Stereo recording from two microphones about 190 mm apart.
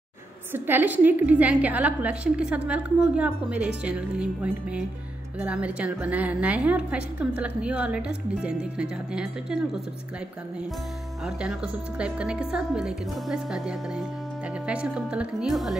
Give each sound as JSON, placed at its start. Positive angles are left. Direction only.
{"t": 0.5, "sound": "a woman's voice", "side_deg": -10}
{"t": 11.2, "sound": "speech", "side_deg": -5}